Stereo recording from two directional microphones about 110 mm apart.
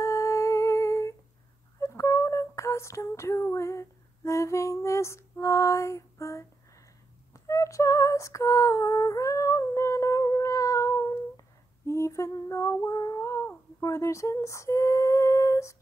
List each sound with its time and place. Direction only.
0.0 s humming: 30° left (ahead or behind)
1.8 s female singing: 25° left (ahead or behind)